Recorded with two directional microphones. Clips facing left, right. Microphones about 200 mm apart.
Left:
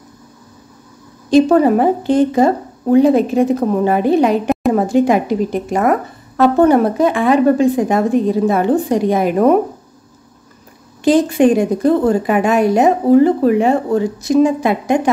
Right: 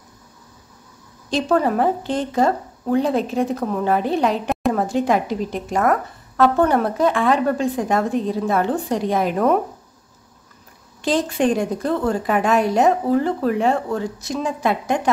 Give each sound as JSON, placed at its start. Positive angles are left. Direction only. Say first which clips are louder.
{"t": 1.3, "sound": "speech", "louder": "left 9 dB", "side_deg": 10}
{"t": 11.0, "sound": "speech", "louder": "left 8 dB", "side_deg": 10}